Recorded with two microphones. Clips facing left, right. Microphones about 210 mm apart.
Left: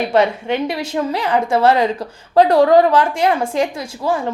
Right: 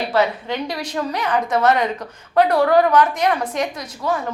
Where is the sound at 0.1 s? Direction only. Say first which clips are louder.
Left 3 dB; 25° left (ahead or behind).